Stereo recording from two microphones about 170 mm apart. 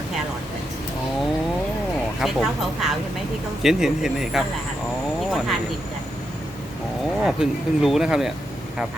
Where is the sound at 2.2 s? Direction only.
Centre (ahead or behind).